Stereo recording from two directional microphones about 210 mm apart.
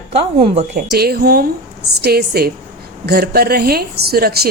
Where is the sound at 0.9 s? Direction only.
50° right (ahead or behind).